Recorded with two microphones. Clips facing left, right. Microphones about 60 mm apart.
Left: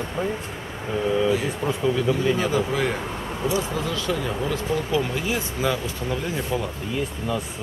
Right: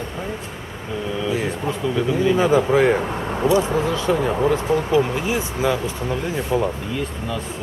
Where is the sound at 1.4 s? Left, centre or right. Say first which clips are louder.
Even; centre.